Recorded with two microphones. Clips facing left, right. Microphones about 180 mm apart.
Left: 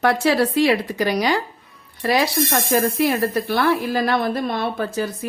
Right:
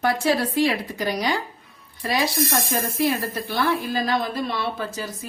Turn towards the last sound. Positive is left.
turn(degrees=60)  # may be behind; listen again after turning